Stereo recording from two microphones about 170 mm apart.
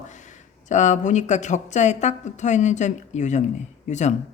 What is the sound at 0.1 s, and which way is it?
Speech, 45° left (ahead or behind).